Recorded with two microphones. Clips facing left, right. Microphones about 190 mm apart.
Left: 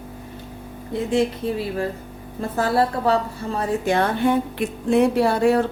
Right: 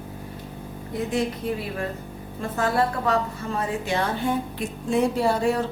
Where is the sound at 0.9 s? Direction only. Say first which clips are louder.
Left 5 dB; 30° left (ahead or behind).